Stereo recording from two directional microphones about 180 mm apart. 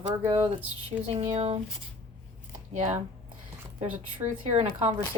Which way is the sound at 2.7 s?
35° right (ahead or behind).